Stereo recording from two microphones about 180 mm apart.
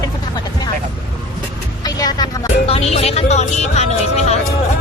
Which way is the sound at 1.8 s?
20° left (ahead or behind).